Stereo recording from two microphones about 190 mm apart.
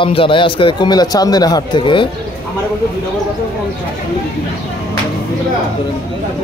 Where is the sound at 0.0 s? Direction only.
25° left (ahead or behind).